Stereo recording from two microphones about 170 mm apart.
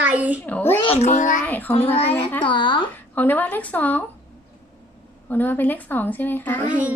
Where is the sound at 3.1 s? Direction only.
10° left (ahead or behind).